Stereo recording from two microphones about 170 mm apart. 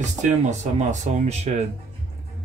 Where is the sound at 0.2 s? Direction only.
45° right (ahead or behind).